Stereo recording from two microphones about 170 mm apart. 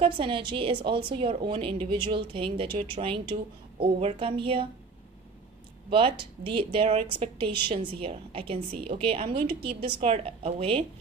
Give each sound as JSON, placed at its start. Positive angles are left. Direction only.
{"t": 0.0, "sound": "a woman's voice", "side_deg": -30}
{"t": 5.9, "sound": "a woman's voice", "side_deg": -30}